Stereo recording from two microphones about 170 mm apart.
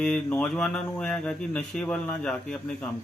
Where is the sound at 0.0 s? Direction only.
10° left (ahead or behind).